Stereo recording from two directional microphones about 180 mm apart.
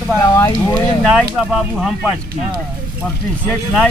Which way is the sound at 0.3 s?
20° left (ahead or behind).